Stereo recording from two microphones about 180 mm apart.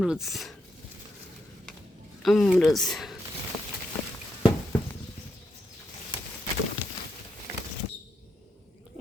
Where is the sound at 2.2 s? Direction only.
Centre (ahead or behind).